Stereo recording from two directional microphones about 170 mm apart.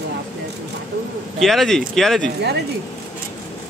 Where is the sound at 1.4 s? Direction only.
Centre (ahead or behind).